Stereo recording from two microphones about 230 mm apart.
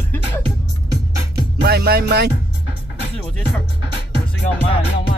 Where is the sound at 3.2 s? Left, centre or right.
Centre.